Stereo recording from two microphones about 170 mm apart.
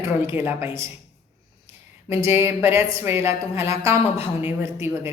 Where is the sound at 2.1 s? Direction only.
15° right (ahead or behind).